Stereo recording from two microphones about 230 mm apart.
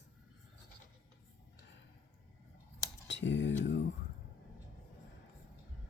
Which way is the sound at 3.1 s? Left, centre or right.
Left.